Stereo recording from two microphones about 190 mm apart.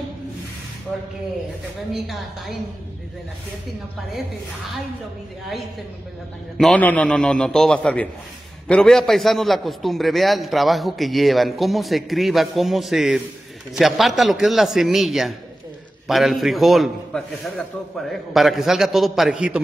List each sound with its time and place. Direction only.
2.0 s a man's voice: centre (ahead or behind)
6.6 s a man's voice: 5° left (ahead or behind)